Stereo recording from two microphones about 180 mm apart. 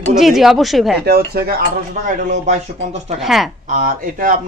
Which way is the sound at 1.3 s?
60° right (ahead or behind).